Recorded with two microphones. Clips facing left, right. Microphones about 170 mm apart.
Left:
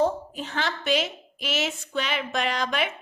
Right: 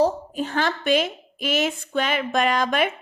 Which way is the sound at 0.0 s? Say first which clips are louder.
Right 3 dB; 50° right (ahead or behind).